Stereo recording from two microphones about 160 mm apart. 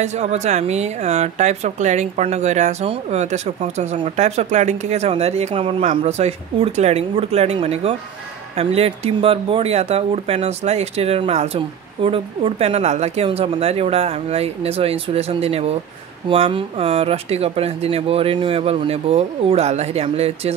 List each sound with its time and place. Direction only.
0.0 s speech: 45° right (ahead or behind)